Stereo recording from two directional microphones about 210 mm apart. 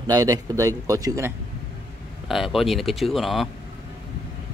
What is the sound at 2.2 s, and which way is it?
Speech, centre (ahead or behind).